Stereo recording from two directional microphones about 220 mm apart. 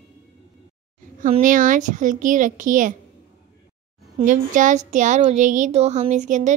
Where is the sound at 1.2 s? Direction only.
35° right (ahead or behind).